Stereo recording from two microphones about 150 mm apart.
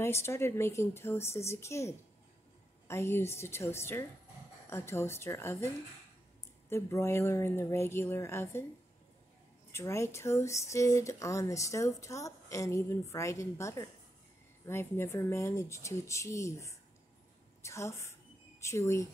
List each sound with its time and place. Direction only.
0.0 s a woman's voice: 15° left (ahead or behind)
6.7 s a woman's voice: 15° left (ahead or behind)
9.7 s speech: 20° left (ahead or behind)